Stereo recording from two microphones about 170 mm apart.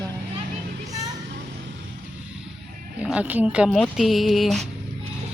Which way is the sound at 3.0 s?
5° right (ahead or behind).